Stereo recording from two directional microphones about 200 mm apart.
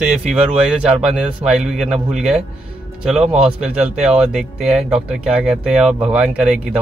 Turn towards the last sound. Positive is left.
turn(degrees=-5)  # may be behind; listen again after turning